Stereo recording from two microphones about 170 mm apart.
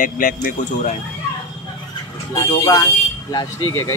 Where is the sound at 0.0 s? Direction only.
55° left (ahead or behind).